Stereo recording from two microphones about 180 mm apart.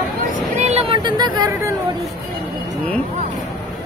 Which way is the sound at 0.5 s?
35° right (ahead or behind).